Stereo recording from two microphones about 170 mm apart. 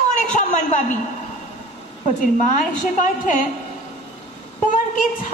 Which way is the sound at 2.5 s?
50° left (ahead or behind).